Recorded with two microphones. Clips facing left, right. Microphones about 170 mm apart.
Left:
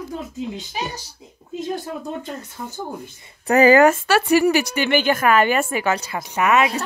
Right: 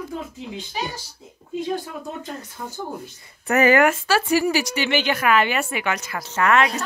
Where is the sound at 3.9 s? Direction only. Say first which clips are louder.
Left 3 dB; 65° left (ahead or behind); by 6.2 s 30° left (ahead or behind).